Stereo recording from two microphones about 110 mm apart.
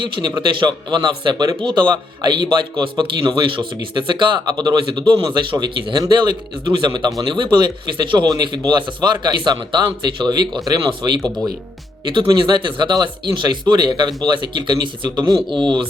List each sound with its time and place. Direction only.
0.0 s a man's voice: 40° right (ahead or behind)
11.2 s speech: 5° left (ahead or behind)
12.0 s speech: 45° right (ahead or behind)